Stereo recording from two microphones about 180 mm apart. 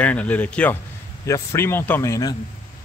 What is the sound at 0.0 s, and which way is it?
Speech, 5° left (ahead or behind).